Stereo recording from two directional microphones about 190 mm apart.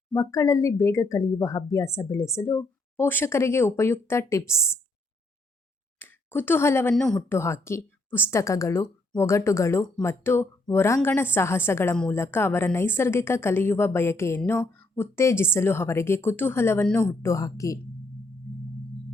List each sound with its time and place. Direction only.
0.1 s a woman's voice: 15° left (ahead or behind)
6.0 s speech: 10° left (ahead or behind)
7.3 s a woman's voice: 15° left (ahead or behind)